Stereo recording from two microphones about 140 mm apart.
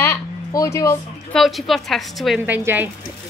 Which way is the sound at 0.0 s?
20° left (ahead or behind).